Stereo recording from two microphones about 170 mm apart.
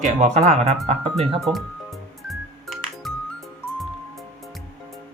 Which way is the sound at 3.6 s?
10° left (ahead or behind).